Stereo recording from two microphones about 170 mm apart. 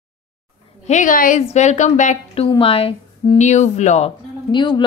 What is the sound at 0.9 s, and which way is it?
A woman's voice, 50° left (ahead or behind).